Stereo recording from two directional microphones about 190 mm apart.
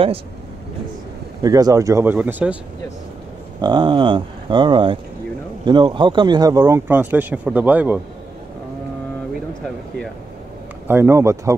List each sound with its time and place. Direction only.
1.4 s speech: 20° right (ahead or behind)
3.6 s speech: 25° right (ahead or behind); by 8.0 s 10° right (ahead or behind)
10.9 s speech: 15° right (ahead or behind)